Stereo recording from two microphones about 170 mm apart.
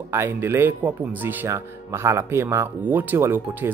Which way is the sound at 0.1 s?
15° right (ahead or behind).